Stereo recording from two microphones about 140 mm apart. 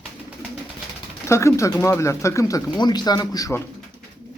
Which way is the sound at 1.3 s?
20° left (ahead or behind).